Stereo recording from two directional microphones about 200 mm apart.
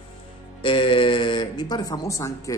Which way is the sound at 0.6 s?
25° left (ahead or behind).